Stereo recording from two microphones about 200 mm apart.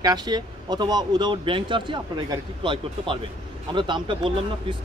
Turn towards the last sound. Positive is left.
turn(degrees=-25)  # may be behind; listen again after turning